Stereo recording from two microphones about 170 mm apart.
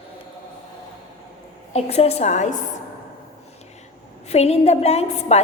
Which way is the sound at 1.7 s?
40° left (ahead or behind).